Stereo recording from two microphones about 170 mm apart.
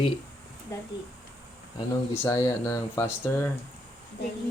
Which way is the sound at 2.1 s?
15° left (ahead or behind).